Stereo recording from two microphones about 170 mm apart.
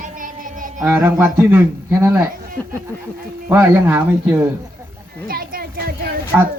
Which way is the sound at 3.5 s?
10° right (ahead or behind).